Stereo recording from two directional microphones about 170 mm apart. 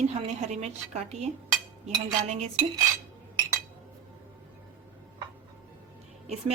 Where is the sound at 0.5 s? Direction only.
40° right (ahead or behind).